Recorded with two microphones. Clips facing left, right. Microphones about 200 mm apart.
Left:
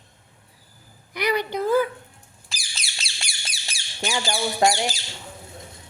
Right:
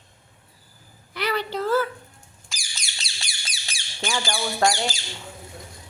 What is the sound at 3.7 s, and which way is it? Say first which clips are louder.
Speech: left 1 dB; 25° left (ahead or behind).